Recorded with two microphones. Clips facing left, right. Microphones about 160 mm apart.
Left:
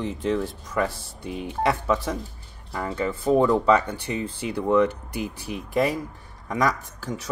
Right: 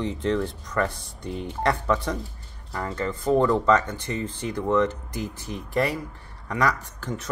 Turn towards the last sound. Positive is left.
turn(degrees=10)  # may be behind; listen again after turning